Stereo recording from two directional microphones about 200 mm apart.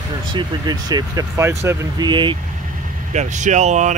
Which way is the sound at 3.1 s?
35° right (ahead or behind).